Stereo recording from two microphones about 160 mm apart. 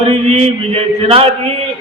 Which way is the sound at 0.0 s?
40° right (ahead or behind).